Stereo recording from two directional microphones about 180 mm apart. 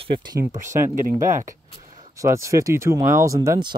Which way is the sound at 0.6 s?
50° right (ahead or behind).